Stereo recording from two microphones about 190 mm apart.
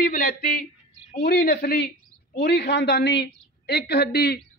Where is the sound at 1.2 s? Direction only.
60° left (ahead or behind).